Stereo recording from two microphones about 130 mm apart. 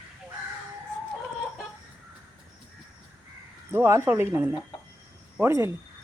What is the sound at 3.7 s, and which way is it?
Speech, 20° right (ahead or behind).